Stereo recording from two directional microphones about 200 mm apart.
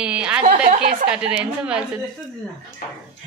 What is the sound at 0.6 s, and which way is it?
Speech, 50° right (ahead or behind).